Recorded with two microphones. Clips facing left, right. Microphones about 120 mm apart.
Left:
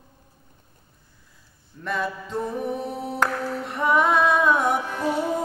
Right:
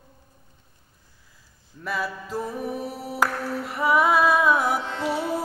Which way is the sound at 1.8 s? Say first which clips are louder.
Left 2 dB; 5° right (ahead or behind).